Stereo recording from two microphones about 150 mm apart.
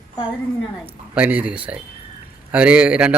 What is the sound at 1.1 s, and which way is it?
A man's voice, 10° right (ahead or behind).